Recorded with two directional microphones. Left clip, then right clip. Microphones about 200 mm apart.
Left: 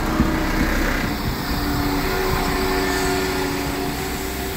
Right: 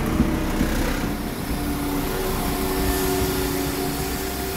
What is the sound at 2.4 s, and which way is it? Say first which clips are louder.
Vehicle: left 4 dB; 50° right (ahead or behind).